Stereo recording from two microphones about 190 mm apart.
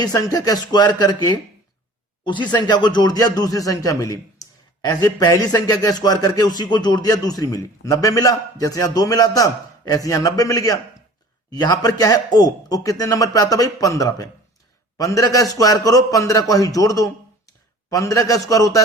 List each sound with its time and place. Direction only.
0.0 s a man's voice: 20° left (ahead or behind)